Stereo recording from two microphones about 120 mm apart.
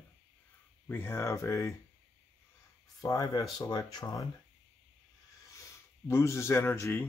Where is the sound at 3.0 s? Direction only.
30° left (ahead or behind).